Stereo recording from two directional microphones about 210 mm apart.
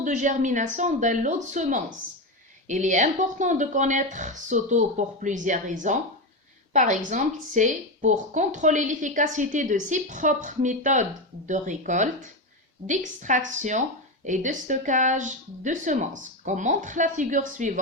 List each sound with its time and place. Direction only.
0.0 s a woman's voice: 35° right (ahead or behind)